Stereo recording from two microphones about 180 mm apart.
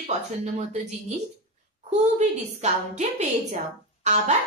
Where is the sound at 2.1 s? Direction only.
40° right (ahead or behind).